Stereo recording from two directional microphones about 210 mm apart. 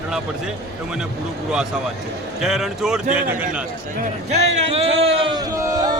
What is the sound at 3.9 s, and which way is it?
Speech, 35° right (ahead or behind).